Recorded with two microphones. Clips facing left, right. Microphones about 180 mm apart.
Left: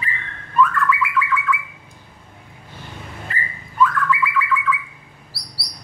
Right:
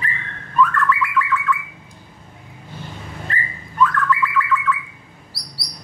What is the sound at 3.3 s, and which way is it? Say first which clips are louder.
Bird: right 2 dB; 5° left (ahead or behind).